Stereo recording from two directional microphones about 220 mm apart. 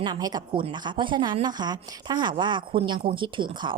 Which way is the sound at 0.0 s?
20° right (ahead or behind).